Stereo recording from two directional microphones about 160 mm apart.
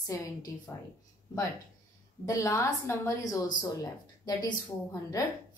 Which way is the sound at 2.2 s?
20° left (ahead or behind).